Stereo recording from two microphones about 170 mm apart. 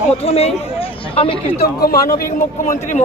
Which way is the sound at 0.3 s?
35° left (ahead or behind).